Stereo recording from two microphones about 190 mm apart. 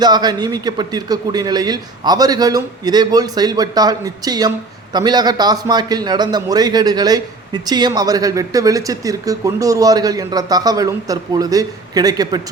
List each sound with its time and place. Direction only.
0.0 s speech: 20° right (ahead or behind)